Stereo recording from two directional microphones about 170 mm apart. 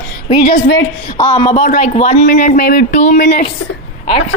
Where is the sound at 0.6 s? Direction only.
65° left (ahead or behind).